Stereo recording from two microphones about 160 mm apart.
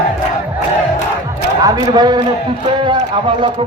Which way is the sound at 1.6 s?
25° right (ahead or behind).